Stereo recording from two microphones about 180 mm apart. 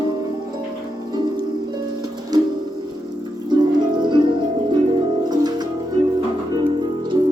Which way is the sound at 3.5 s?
25° right (ahead or behind).